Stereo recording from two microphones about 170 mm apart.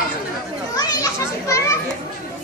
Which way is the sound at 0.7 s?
20° left (ahead or behind).